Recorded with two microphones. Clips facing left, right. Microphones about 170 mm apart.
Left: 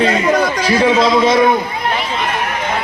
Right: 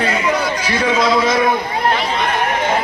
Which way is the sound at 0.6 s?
30° left (ahead or behind).